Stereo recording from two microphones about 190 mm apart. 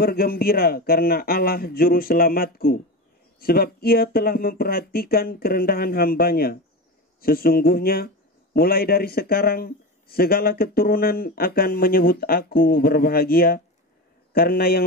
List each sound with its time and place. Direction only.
0.0 s speech: 50° left (ahead or behind)